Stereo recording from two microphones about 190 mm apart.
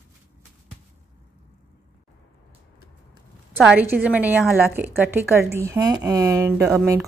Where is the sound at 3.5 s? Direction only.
5° right (ahead or behind).